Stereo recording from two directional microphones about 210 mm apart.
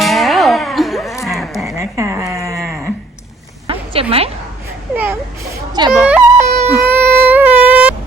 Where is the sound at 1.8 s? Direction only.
15° right (ahead or behind).